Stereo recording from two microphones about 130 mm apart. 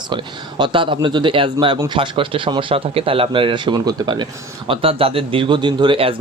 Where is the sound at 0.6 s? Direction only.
40° right (ahead or behind).